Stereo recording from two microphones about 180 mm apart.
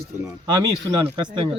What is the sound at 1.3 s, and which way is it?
Speech, 25° right (ahead or behind).